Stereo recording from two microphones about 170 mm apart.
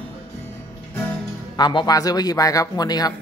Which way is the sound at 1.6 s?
25° left (ahead or behind).